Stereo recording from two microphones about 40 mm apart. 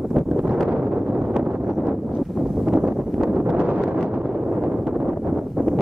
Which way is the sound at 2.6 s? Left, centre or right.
Right.